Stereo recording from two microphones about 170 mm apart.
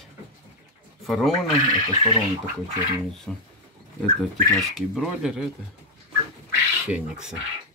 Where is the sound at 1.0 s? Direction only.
Centre (ahead or behind).